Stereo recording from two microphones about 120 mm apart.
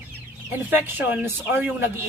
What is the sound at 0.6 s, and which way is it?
Speech, 15° right (ahead or behind).